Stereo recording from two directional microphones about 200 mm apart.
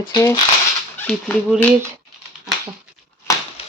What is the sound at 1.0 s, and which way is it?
Speech, 5° left (ahead or behind).